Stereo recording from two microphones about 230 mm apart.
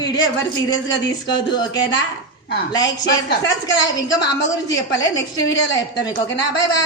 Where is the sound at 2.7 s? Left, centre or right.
Centre.